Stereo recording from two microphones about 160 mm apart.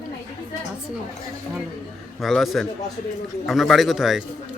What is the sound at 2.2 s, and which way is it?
Speech, centre (ahead or behind).